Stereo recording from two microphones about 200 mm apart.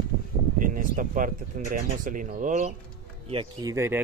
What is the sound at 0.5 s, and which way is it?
Speech, 45° right (ahead or behind).